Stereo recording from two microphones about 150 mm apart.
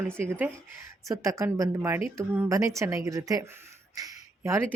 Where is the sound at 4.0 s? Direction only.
20° right (ahead or behind).